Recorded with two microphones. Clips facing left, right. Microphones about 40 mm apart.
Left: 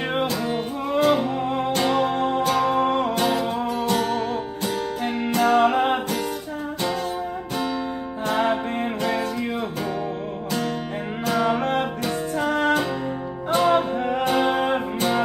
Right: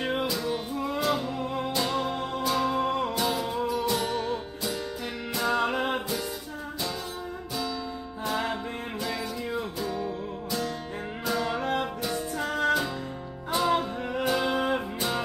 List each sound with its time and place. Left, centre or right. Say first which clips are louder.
0.0 s music: left 4 dB; left
8.3 s music: left 8 dB; left
11.2 s music: left 6 dB; left
11.8 s music: left 5 dB; left